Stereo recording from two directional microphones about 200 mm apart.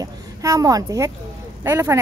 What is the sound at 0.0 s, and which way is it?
A woman's voice, 15° right (ahead or behind).